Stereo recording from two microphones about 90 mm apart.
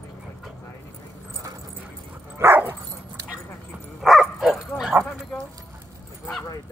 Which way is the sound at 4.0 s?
Centre (ahead or behind).